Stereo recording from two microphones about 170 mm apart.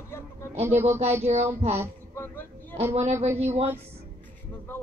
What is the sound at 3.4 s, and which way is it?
Speech, 40° right (ahead or behind).